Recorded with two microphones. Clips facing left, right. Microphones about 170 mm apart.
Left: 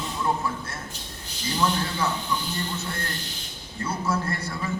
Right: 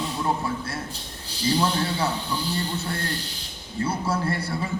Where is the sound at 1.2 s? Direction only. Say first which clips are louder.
Right 3 dB; 30° right (ahead or behind).